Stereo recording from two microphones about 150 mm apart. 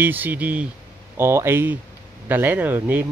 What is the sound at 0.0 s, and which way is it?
Speech, 10° right (ahead or behind).